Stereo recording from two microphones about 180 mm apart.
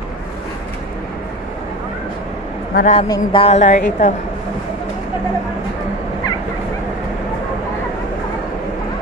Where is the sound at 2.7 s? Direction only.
40° left (ahead or behind).